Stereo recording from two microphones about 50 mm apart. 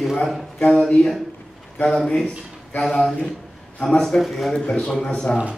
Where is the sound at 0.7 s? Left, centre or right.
Centre.